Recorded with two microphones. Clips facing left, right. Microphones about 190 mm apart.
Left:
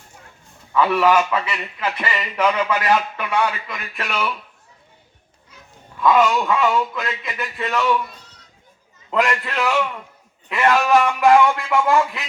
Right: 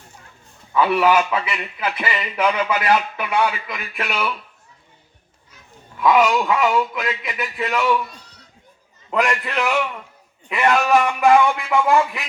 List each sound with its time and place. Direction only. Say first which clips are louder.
0.7 s speech: even; 15° right (ahead or behind)
6.0 s speech: even; 15° right (ahead or behind)
9.0 s speech: even; 15° right (ahead or behind)